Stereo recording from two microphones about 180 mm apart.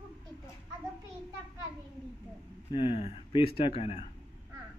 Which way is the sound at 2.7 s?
30° left (ahead or behind).